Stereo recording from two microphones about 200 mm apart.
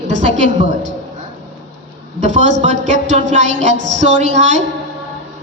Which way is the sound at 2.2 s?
35° right (ahead or behind).